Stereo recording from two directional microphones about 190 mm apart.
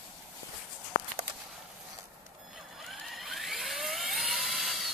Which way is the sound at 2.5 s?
Centre (ahead or behind).